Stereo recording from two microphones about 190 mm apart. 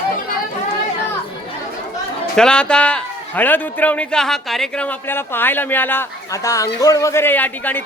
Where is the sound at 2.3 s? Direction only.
5° left (ahead or behind).